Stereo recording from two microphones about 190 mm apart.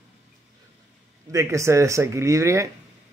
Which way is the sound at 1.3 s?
15° right (ahead or behind).